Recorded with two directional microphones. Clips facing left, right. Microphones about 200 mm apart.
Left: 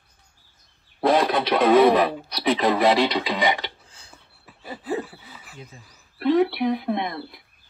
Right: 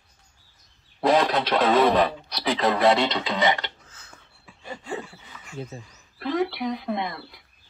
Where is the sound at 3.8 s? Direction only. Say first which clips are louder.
Even; 30° left (ahead or behind).